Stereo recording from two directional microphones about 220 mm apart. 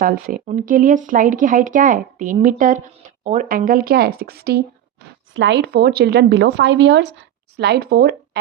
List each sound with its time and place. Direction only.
0.0 s a woman's voice: 40° right (ahead or behind)